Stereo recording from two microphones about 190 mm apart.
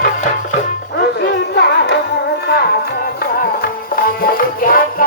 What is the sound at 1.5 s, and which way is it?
Music, 60° left (ahead or behind).